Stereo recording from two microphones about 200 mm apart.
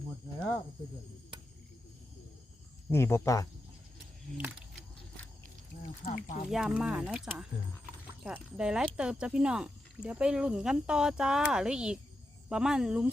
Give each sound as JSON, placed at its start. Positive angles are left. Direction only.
{"t": 2.9, "sound": "speech", "side_deg": 10}
{"t": 4.4, "sound": "a sound", "side_deg": -5}
{"t": 6.0, "sound": "speech", "side_deg": 30}
{"t": 6.5, "sound": "speech", "side_deg": -5}